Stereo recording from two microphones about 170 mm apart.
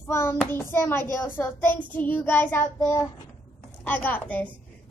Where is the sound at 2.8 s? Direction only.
20° left (ahead or behind).